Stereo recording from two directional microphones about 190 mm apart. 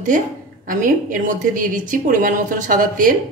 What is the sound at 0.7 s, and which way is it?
A woman's voice, 45° right (ahead or behind).